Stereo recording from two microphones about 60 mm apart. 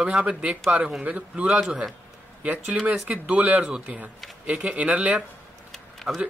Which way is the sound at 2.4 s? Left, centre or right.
Right.